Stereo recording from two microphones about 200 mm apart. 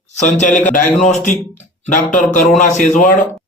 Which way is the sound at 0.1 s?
35° left (ahead or behind).